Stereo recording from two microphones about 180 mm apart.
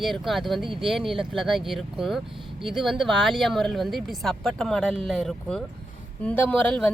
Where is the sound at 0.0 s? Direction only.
Centre (ahead or behind).